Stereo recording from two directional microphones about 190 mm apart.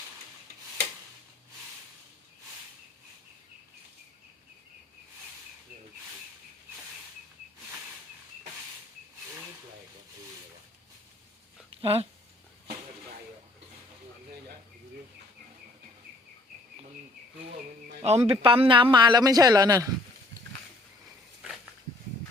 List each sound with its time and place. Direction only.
11.8 s speech: 30° right (ahead or behind)
18.0 s a man's voice: 30° right (ahead or behind)